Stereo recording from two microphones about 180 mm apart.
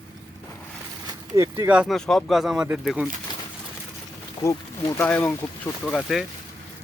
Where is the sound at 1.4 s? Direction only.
10° right (ahead or behind).